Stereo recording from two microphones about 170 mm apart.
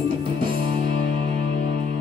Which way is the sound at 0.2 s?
30° right (ahead or behind).